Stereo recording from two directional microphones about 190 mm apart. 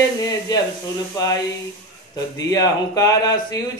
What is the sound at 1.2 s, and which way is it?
Speech, 15° left (ahead or behind).